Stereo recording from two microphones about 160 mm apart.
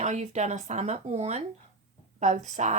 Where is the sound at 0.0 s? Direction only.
45° right (ahead or behind).